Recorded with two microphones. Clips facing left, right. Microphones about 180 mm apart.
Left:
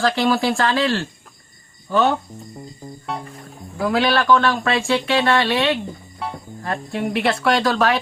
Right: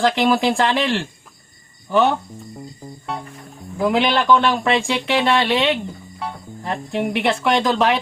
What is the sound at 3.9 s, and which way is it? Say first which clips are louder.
Speech: even; 20° right (ahead or behind).